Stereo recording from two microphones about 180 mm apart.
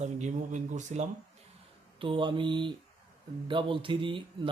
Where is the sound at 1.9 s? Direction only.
30° right (ahead or behind).